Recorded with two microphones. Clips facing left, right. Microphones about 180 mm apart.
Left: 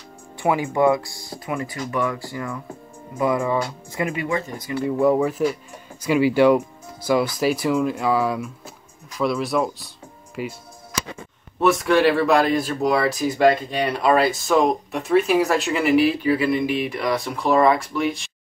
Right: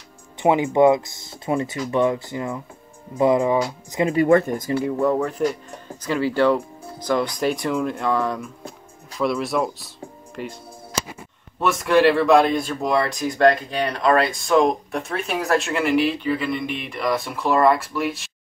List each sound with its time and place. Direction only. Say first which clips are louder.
0.4 s speech: right 3 dB; 20° right (ahead or behind)
4.3 s speech: right 9 dB; 55° right (ahead or behind)
5.0 s speech: left 4 dB; 10° left (ahead or behind)
11.6 s speech: even; centre (ahead or behind)